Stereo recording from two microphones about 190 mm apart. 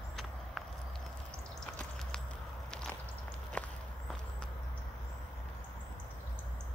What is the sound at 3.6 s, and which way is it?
Walk, 5° left (ahead or behind).